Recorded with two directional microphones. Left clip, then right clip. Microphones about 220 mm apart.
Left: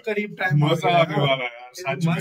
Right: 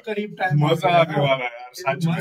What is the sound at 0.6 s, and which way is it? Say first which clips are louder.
A man's voice: right 2 dB; 20° right (ahead or behind).